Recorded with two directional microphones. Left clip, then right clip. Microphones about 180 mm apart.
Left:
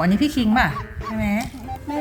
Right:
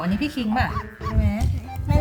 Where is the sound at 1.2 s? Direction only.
15° left (ahead or behind).